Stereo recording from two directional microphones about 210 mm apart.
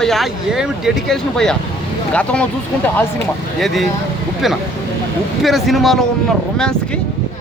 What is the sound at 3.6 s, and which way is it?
Speech, centre (ahead or behind).